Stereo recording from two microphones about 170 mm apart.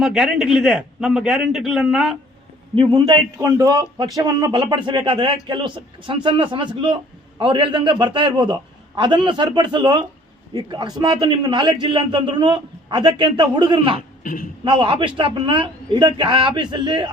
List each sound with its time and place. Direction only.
0.0 s a man's voice: centre (ahead or behind)
2.7 s speech: 25° right (ahead or behind)